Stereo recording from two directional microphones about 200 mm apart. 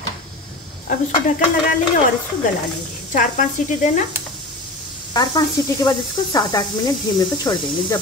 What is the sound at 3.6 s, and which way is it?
Stir, 35° left (ahead or behind).